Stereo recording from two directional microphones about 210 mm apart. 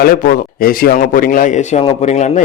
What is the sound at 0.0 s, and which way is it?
Speech, 45° left (ahead or behind).